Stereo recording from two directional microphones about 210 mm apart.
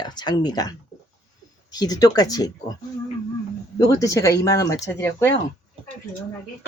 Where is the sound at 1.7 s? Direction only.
20° left (ahead or behind).